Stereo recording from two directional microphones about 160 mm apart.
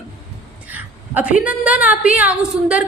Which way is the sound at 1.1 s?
10° right (ahead or behind).